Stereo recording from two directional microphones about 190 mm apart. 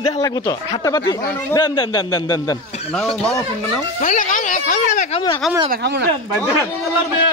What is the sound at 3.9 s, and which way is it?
Speech, 45° left (ahead or behind).